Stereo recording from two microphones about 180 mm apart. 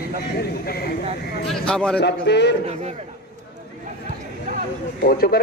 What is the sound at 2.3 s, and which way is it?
Speech, 70° left (ahead or behind).